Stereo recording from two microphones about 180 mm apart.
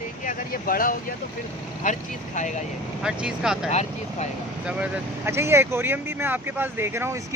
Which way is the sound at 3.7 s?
35° left (ahead or behind).